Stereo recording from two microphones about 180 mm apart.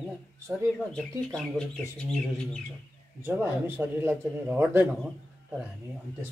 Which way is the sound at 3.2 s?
15° right (ahead or behind).